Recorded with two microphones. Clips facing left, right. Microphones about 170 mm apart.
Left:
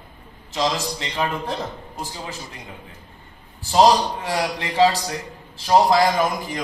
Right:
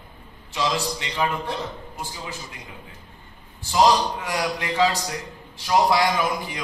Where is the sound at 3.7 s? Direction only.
30° left (ahead or behind).